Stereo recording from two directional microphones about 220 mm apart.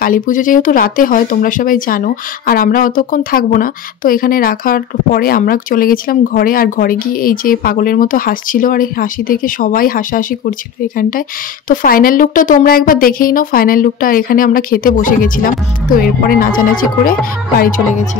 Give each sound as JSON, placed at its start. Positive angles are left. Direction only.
{"t": 0.0, "sound": "speech", "side_deg": 40}